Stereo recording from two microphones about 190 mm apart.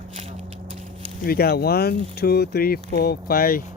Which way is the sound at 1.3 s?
55° left (ahead or behind).